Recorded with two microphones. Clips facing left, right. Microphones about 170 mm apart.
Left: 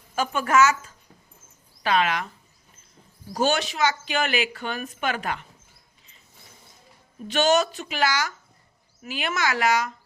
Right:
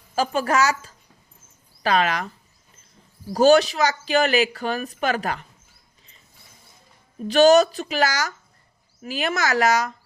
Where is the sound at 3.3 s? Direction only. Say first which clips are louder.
Right 9 dB; 40° right (ahead or behind).